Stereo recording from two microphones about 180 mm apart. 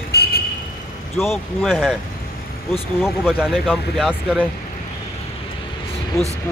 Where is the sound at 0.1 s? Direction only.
60° left (ahead or behind).